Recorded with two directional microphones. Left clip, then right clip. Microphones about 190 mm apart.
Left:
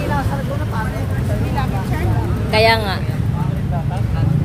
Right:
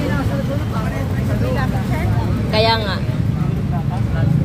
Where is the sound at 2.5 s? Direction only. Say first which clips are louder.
Left 3 dB; 50° left (ahead or behind).